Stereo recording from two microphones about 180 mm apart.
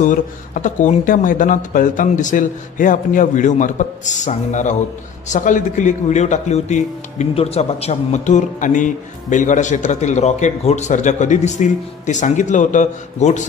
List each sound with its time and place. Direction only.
0.0 s a man's voice: 45° left (ahead or behind)